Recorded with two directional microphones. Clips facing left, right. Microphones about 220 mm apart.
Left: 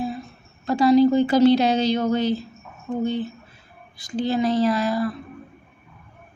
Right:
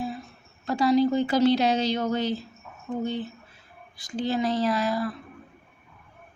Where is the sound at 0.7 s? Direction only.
25° left (ahead or behind).